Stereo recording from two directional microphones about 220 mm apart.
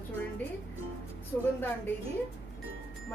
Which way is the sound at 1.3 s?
10° left (ahead or behind).